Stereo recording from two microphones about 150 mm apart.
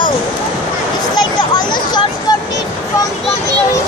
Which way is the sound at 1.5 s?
30° left (ahead or behind).